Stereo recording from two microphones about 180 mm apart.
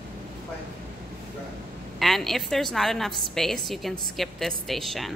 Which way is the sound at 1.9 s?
Centre (ahead or behind).